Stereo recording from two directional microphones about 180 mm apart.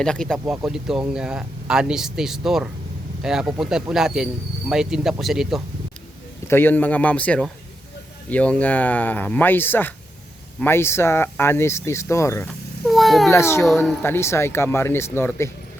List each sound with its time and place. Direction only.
0.0 s a man's voice: 5° left (ahead or behind)
0.3 s a man's voice: 10° right (ahead or behind)
6.5 s speech: 10° left (ahead or behind)
12.9 s cat: centre (ahead or behind)
13.3 s speech: 15° left (ahead or behind)
13.6 s a man's voice: centre (ahead or behind)
14.0 s speech: 15° left (ahead or behind)